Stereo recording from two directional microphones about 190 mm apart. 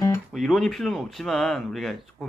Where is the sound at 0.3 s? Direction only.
Centre (ahead or behind).